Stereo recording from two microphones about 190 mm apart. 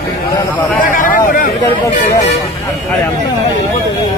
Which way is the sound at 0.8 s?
45° left (ahead or behind).